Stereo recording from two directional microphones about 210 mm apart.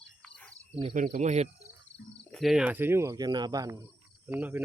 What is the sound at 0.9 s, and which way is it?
Speech, 40° right (ahead or behind).